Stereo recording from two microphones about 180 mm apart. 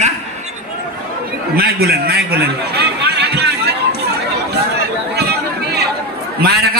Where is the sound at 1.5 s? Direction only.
60° right (ahead or behind).